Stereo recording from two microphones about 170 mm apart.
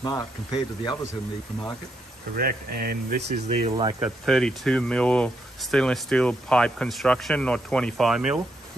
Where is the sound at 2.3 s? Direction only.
60° right (ahead or behind).